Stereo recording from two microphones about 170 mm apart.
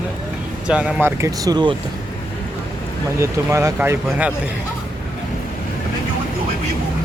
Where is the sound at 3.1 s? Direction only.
15° right (ahead or behind).